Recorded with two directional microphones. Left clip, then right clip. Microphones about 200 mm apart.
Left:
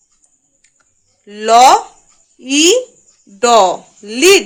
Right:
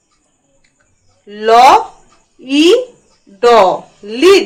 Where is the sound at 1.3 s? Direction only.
70° left (ahead or behind).